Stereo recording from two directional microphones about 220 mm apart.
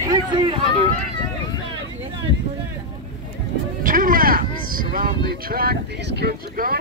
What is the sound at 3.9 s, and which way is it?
Vehicle, 40° right (ahead or behind).